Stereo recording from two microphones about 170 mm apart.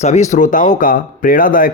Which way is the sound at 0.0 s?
40° left (ahead or behind).